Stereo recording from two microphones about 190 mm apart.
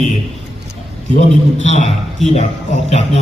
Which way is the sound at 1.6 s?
35° left (ahead or behind).